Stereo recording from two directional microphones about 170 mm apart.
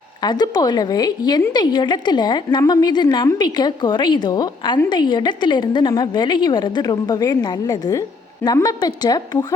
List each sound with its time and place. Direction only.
0.2 s a woman's voice: 25° left (ahead or behind)